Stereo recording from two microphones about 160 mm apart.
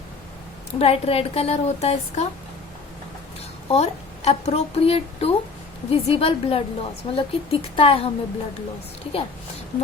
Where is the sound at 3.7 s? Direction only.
40° left (ahead or behind).